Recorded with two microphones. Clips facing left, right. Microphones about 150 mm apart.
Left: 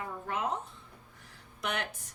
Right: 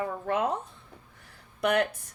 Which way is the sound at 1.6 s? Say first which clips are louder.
Right 10 dB; 60° right (ahead or behind).